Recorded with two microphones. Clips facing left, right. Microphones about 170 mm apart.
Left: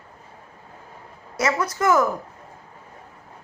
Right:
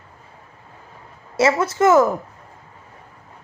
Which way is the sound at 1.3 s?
25° right (ahead or behind).